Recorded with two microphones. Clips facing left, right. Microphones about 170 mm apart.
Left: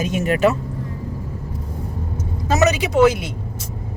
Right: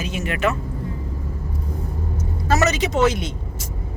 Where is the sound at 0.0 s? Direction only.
45° left (ahead or behind).